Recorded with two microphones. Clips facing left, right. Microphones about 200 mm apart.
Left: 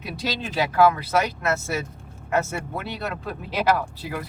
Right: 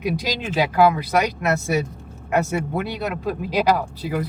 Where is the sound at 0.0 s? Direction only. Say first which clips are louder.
Right 5 dB; 15° right (ahead or behind).